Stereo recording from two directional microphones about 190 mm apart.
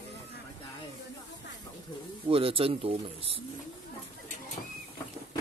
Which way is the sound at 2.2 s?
30° right (ahead or behind).